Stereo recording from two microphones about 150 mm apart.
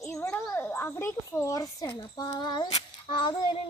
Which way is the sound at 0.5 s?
15° left (ahead or behind).